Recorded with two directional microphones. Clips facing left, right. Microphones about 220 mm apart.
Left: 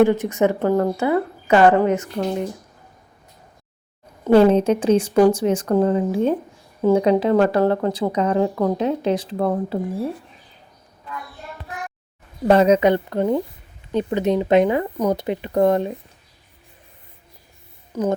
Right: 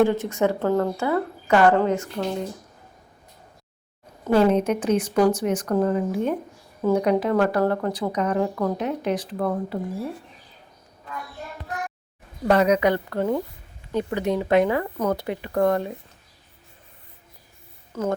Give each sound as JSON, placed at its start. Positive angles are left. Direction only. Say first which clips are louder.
{"t": 0.0, "sound": "speech", "louder": "left 4 dB", "side_deg": 15}
{"t": 4.3, "sound": "a woman's voice", "louder": "left 5 dB", "side_deg": 30}
{"t": 12.5, "sound": "a woman's voice", "louder": "left 4 dB", "side_deg": 25}
{"t": 17.9, "sound": "speech", "louder": "left 4 dB", "side_deg": 15}